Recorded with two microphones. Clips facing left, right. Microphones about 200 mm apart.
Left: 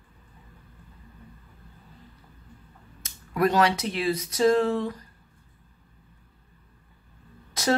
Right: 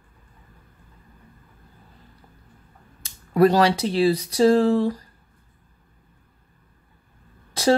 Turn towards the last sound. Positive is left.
turn(degrees=-30)  # may be behind; listen again after turning